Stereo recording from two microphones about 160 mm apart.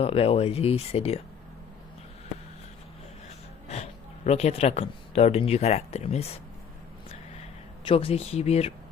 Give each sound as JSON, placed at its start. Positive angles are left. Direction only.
{"t": 0.0, "sound": "speech", "side_deg": 35}
{"t": 3.2, "sound": "speech", "side_deg": 40}
{"t": 7.9, "sound": "speech", "side_deg": 35}